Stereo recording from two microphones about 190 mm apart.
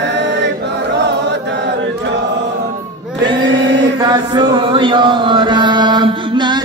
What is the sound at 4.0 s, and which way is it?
Chant, 20° right (ahead or behind).